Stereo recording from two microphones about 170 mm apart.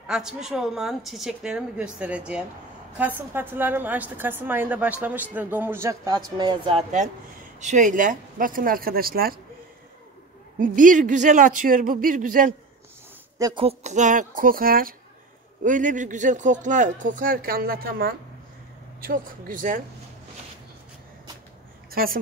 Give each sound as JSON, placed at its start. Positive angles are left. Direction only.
{"t": 0.0, "sound": "a woman's voice", "side_deg": -5}
{"t": 7.6, "sound": "speech", "side_deg": -50}
{"t": 10.6, "sound": "speech", "side_deg": -50}
{"t": 13.4, "sound": "speech", "side_deg": -20}
{"t": 13.7, "sound": "speech", "side_deg": -45}
{"t": 21.9, "sound": "a woman's voice", "side_deg": -60}